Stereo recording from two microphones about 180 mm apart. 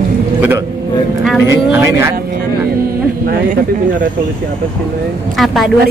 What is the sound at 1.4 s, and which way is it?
Speech, 15° right (ahead or behind).